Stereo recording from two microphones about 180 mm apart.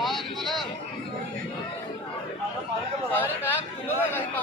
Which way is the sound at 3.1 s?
10° left (ahead or behind).